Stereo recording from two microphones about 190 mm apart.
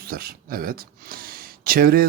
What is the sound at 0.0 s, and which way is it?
Speech, 50° right (ahead or behind).